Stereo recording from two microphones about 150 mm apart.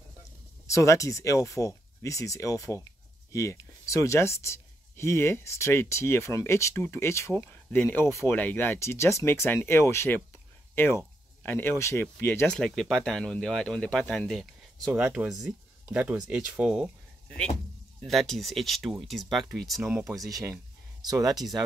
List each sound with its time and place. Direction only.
0.7 s speech: 20° left (ahead or behind)
10.7 s a sound: 15° left (ahead or behind)
11.4 s speech: 15° left (ahead or behind)
14.9 s speech: 10° right (ahead or behind)
18.0 s speech: 5° left (ahead or behind)
21.0 s speech: 25° right (ahead or behind)